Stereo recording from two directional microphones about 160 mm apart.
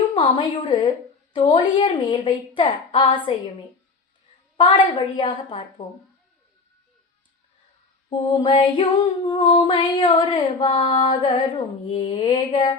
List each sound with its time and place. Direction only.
0.1 s a woman's voice: 30° left (ahead or behind)
1.3 s female singing: 30° left (ahead or behind)
2.6 s a woman's voice: 30° left (ahead or behind)
4.5 s a woman's voice: 30° left (ahead or behind)
8.1 s female singing: 30° left (ahead or behind)
11.9 s a woman's voice: 30° left (ahead or behind)